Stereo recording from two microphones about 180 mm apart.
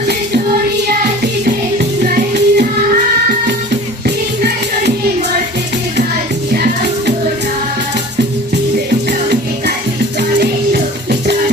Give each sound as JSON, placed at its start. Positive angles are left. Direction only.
{"t": 0.9, "sound": "music", "side_deg": -60}
{"t": 10.4, "sound": "music", "side_deg": -65}